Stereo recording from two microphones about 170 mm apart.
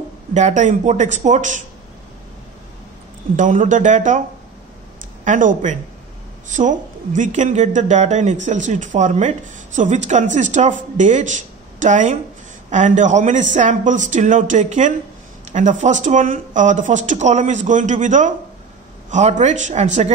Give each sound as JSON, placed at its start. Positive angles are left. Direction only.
{"t": 0.3, "sound": "speech", "side_deg": -45}
{"t": 3.3, "sound": "speech", "side_deg": -50}
{"t": 5.2, "sound": "speech", "side_deg": -50}